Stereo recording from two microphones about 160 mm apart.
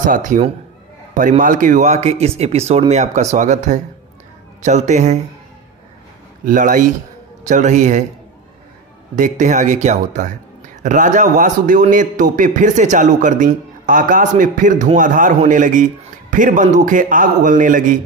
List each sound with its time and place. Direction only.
0.0 s a man's voice: 50° right (ahead or behind)
6.4 s a man's voice: 55° right (ahead or behind)
9.1 s a man's voice: 50° right (ahead or behind)